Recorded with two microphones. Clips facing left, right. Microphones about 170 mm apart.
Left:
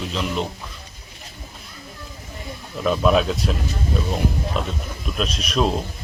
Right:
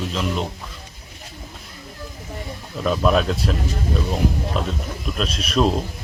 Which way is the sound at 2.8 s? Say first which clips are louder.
Left 1 dB; centre (ahead or behind).